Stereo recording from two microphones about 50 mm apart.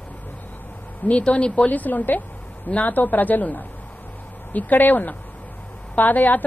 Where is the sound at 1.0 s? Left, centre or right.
Left.